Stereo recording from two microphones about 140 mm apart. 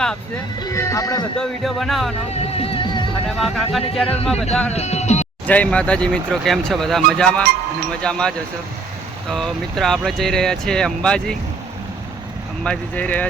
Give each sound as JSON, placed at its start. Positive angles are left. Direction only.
{"t": 0.6, "sound": "speech", "side_deg": 20}
{"t": 1.4, "sound": "speech", "side_deg": 0}
{"t": 2.6, "sound": "music", "side_deg": 40}
{"t": 3.2, "sound": "speech", "side_deg": 0}
{"t": 4.7, "sound": "speech", "side_deg": 50}
{"t": 5.5, "sound": "speech", "side_deg": 10}
{"t": 12.6, "sound": "speech", "side_deg": 10}